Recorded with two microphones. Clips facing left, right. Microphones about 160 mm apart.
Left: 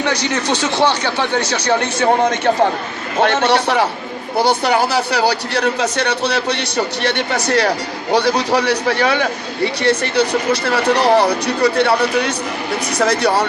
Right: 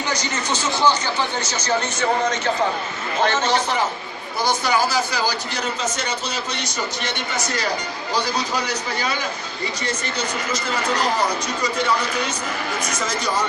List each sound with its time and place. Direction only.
0.0 s speech: 65° left (ahead or behind)